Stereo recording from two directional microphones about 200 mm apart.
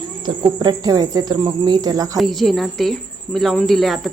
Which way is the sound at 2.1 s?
Centre (ahead or behind).